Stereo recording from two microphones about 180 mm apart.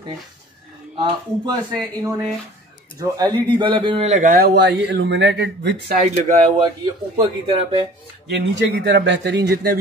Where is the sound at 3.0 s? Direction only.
20° right (ahead or behind); by 5.7 s 75° right (ahead or behind).